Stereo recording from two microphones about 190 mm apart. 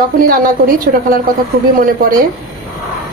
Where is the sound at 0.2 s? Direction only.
50° right (ahead or behind).